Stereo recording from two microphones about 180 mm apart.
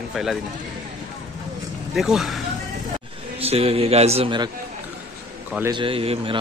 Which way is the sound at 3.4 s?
35° right (ahead or behind).